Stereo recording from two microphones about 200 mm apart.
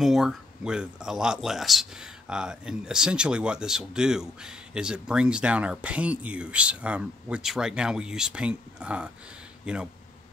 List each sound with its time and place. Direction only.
0.0 s speech: centre (ahead or behind)